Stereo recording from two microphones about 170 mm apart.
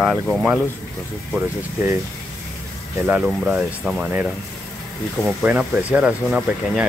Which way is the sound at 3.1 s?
5° right (ahead or behind).